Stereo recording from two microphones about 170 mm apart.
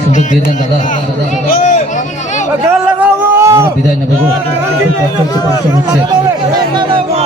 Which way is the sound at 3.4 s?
20° right (ahead or behind).